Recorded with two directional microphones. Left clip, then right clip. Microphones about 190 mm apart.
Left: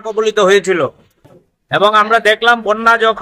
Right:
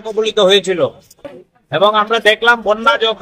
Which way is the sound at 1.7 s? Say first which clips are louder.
Left 2 dB; 35° left (ahead or behind).